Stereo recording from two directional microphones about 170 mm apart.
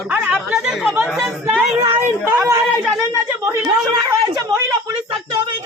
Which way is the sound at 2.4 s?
15° right (ahead or behind).